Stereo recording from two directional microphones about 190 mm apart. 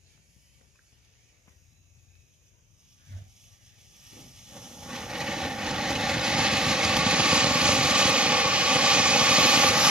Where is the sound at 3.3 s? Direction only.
5° right (ahead or behind).